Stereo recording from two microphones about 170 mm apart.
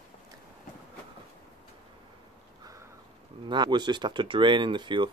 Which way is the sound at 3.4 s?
25° right (ahead or behind).